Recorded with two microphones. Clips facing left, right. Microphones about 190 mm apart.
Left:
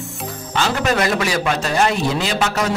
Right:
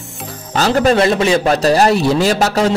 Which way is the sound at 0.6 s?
40° right (ahead or behind).